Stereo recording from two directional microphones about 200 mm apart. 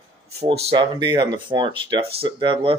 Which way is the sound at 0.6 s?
20° right (ahead or behind).